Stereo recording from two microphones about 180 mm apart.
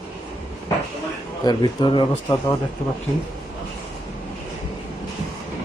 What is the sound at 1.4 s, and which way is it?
Speech, 25° left (ahead or behind).